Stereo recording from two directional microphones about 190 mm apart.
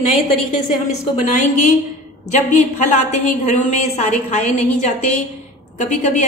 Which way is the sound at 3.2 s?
40° left (ahead or behind).